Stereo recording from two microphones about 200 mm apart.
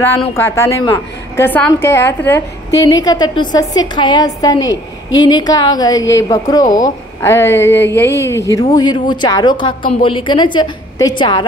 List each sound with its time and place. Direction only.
0.3 s a woman's voice: 15° left (ahead or behind)